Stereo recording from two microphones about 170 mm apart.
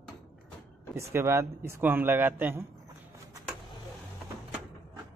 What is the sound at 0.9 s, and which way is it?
A man's voice, 15° right (ahead or behind).